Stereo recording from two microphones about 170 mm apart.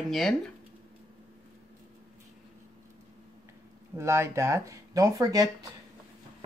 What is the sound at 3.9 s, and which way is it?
Speech, 15° right (ahead or behind).